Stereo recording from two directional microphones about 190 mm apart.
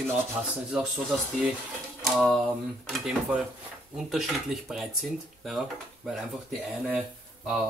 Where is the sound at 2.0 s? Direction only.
5° left (ahead or behind).